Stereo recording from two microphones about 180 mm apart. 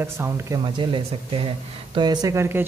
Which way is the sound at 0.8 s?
25° right (ahead or behind).